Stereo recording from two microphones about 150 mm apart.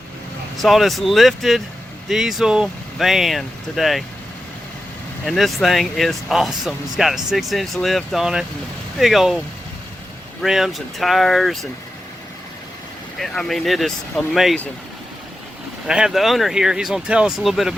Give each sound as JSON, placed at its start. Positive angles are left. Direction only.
{"t": 0.5, "sound": "speech", "side_deg": 0}
{"t": 5.2, "sound": "speech", "side_deg": 0}
{"t": 10.4, "sound": "speech", "side_deg": 0}
{"t": 13.1, "sound": "speech", "side_deg": 5}
{"t": 15.9, "sound": "speech", "side_deg": -5}